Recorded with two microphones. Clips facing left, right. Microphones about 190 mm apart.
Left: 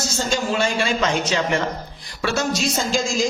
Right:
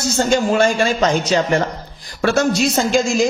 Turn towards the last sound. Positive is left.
turn(degrees=-60)  # may be behind; listen again after turning